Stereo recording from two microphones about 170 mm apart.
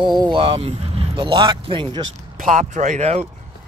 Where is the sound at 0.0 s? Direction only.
25° right (ahead or behind).